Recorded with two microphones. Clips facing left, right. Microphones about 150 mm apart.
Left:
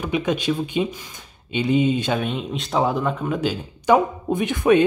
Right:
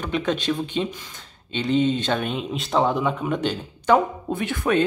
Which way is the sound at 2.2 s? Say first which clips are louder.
Left 1 dB; centre (ahead or behind).